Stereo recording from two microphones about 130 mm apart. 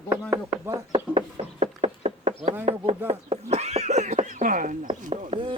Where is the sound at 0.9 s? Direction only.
45° right (ahead or behind).